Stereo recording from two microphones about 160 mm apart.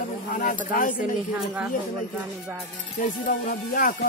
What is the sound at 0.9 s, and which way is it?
Speech, 10° right (ahead or behind).